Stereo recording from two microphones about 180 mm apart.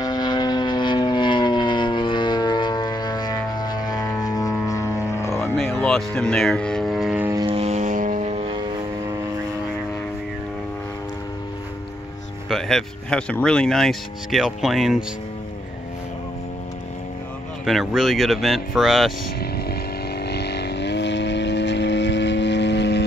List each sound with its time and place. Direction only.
0.0 s siren: 25° left (ahead or behind)
5.4 s vehicle: centre (ahead or behind)
7.3 s vehicle: 30° right (ahead or behind)
12.4 s speech: centre (ahead or behind)
17.6 s speech: centre (ahead or behind)
20.2 s vehicle: 70° left (ahead or behind)